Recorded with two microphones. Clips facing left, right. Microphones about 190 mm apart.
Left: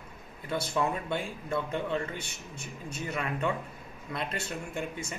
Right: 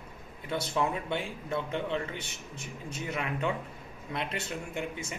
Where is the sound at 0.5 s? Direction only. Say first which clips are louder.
Even; 20° right (ahead or behind).